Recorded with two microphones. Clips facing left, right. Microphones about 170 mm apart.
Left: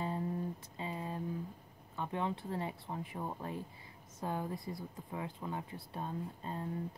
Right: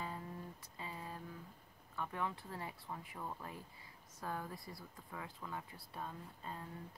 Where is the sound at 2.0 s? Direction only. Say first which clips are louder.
Left 5 dB; 25° left (ahead or behind).